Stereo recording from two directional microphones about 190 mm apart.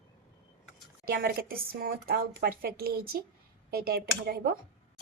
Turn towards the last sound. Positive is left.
turn(degrees=-55)  # may be behind; listen again after turning